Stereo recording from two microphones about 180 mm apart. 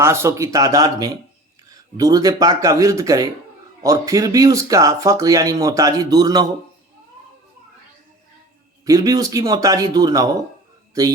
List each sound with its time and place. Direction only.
0.0 s speech: 15° right (ahead or behind)
8.8 s speech: 20° right (ahead or behind)